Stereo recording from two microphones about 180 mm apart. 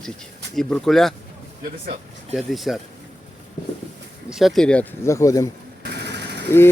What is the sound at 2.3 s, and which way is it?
Speech, centre (ahead or behind).